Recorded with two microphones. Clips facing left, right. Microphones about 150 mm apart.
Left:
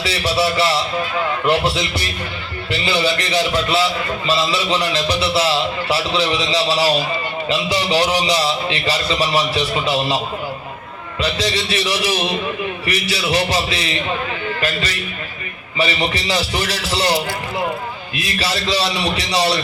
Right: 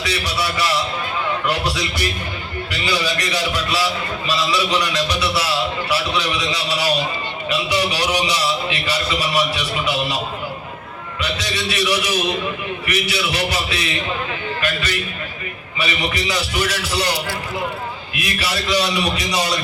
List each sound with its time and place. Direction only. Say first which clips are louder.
0.0 s a man's voice: left 5 dB; 30° left (ahead or behind)
11.2 s music: left 4 dB; 30° left (ahead or behind)
18.1 s a man's voice: left 2 dB; 30° left (ahead or behind)